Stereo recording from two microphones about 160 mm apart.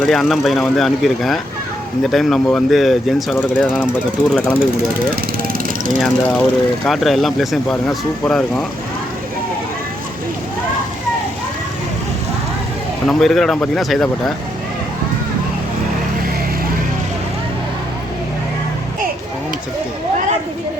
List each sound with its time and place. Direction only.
0.0 s speech: centre (ahead or behind)
5.1 s vehicle: 60° right (ahead or behind)
6.0 s speech: 5° left (ahead or behind)
13.1 s speech: centre (ahead or behind)